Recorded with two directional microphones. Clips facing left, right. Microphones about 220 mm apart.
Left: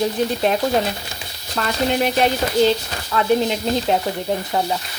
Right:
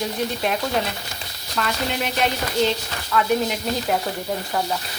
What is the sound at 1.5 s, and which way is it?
Speech, 35° left (ahead or behind).